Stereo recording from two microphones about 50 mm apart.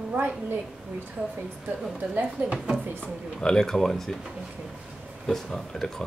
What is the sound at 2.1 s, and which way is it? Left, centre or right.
Speech, right.